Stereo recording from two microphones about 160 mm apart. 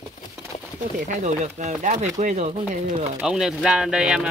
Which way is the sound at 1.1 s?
50° right (ahead or behind).